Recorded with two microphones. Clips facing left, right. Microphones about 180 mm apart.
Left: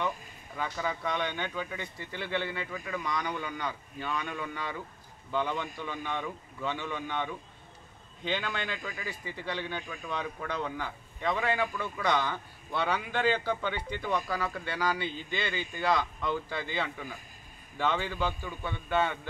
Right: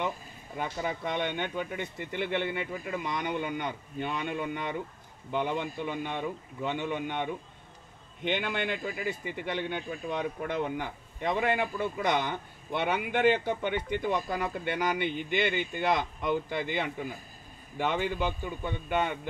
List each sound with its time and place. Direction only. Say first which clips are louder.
0.6 s speech: right 1 dB; 25° right (ahead or behind)
8.3 s a man's voice: right 3 dB; 20° right (ahead or behind)